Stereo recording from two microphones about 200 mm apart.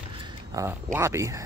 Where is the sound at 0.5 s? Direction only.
15° right (ahead or behind).